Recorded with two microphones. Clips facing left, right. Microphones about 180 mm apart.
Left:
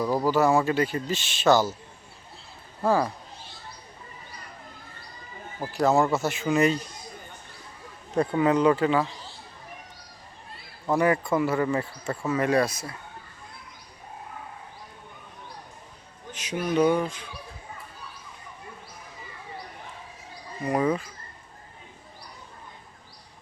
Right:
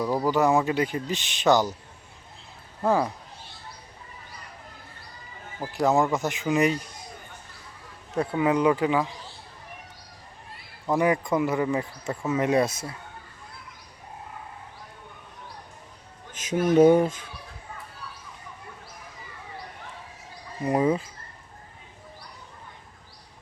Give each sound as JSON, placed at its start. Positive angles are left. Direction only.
{"t": 0.0, "sound": "speech", "side_deg": -5}
{"t": 0.3, "sound": "speech", "side_deg": -15}
{"t": 5.7, "sound": "speech", "side_deg": -15}
{"t": 8.1, "sound": "speech", "side_deg": -5}
{"t": 10.9, "sound": "speech", "side_deg": -15}
{"t": 16.3, "sound": "speech", "side_deg": -45}
{"t": 20.7, "sound": "speech", "side_deg": -25}